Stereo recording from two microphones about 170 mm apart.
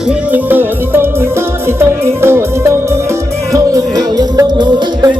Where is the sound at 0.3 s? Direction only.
10° right (ahead or behind).